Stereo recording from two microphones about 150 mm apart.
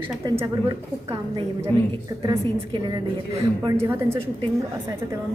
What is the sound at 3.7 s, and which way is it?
Speech, 15° right (ahead or behind).